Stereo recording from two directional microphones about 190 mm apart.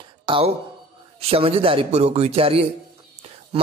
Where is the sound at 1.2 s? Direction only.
30° right (ahead or behind).